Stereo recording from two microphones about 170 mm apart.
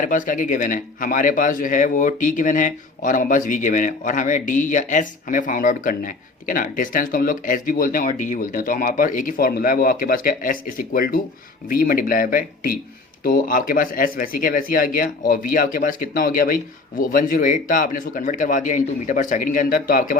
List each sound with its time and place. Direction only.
0.0 s speech: 50° left (ahead or behind)